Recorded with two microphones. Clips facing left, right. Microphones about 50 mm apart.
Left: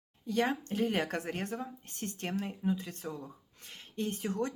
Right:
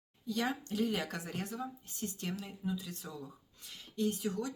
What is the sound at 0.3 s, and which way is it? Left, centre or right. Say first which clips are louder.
Speech: left 4 dB; left.